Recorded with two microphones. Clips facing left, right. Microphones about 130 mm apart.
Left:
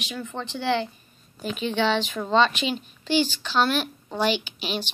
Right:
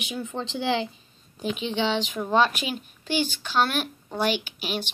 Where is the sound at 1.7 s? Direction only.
15° right (ahead or behind).